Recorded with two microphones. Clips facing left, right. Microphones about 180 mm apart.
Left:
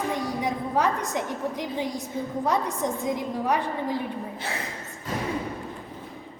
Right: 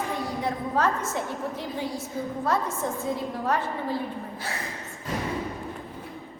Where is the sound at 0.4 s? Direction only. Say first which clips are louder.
Even; 15° left (ahead or behind).